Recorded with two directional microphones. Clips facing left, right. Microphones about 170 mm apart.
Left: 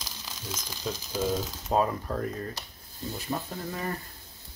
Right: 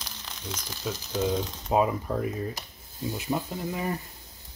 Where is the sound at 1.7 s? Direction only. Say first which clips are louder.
Right 2 dB; 10° right (ahead or behind).